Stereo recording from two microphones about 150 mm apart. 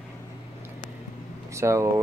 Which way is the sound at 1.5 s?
20° right (ahead or behind).